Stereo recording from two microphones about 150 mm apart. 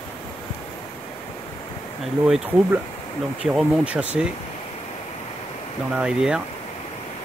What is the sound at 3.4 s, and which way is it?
Speech, 5° right (ahead or behind).